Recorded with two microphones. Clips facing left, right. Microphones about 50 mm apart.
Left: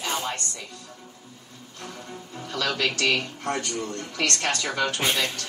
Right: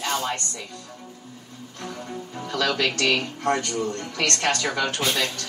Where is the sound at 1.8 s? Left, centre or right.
Right.